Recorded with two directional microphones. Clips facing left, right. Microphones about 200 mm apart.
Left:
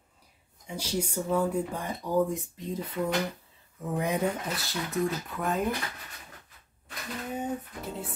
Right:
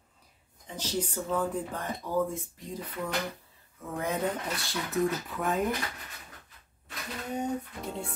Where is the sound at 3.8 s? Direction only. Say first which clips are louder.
Left 3 dB; 15° left (ahead or behind).